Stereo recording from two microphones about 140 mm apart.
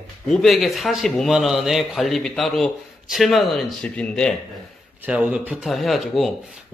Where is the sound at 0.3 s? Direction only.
Centre (ahead or behind).